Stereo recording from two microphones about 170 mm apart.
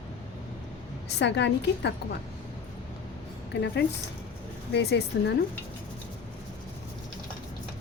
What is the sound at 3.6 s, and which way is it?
Speech, 90° left.